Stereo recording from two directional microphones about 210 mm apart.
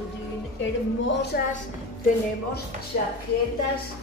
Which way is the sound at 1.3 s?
45° left (ahead or behind).